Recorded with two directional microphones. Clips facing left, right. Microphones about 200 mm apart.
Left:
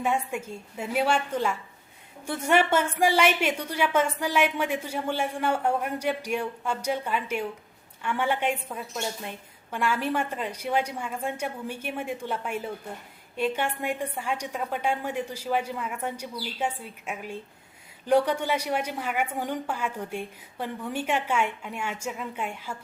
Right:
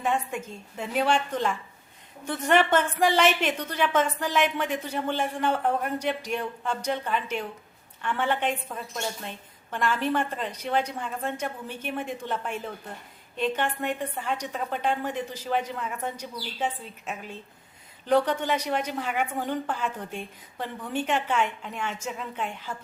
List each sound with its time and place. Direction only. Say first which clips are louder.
0.0 s a woman's voice: even; 10° left (ahead or behind)